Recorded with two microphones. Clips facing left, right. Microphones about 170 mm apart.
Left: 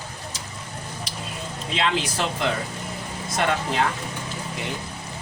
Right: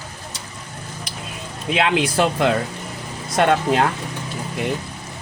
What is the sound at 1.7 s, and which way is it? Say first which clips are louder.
Speech: right 6 dB; 60° right (ahead or behind).